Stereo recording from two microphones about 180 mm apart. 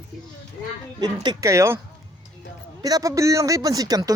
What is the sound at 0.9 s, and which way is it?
Speech, 25° right (ahead or behind).